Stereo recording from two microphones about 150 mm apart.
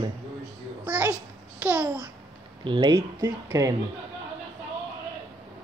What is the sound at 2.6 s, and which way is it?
Speech, 30° right (ahead or behind).